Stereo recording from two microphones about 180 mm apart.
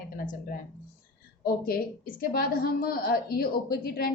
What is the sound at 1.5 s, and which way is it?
A woman's voice, 55° left (ahead or behind).